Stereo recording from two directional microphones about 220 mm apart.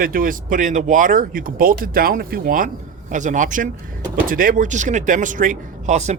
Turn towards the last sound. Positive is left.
turn(degrees=-30)  # may be behind; listen again after turning